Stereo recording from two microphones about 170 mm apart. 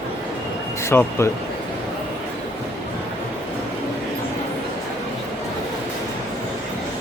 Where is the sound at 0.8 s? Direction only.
15° left (ahead or behind).